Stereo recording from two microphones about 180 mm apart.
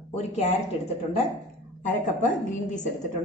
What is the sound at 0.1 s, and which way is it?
A woman's voice, 35° left (ahead or behind).